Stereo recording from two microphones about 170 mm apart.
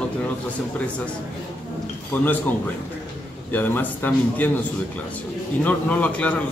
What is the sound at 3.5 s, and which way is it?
A man's voice, 10° left (ahead or behind).